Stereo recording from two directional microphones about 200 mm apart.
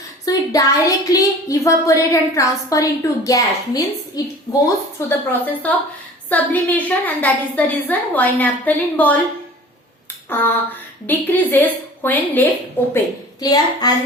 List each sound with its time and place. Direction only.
0.3 s speech: 15° left (ahead or behind)
10.2 s a sound: 10° left (ahead or behind)
11.0 s a woman's voice: 10° left (ahead or behind)